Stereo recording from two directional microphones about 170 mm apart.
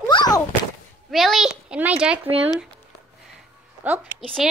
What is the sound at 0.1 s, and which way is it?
Thunk, 25° left (ahead or behind).